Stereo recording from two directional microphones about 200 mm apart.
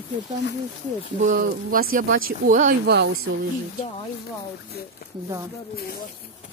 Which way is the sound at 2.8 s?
55° right (ahead or behind).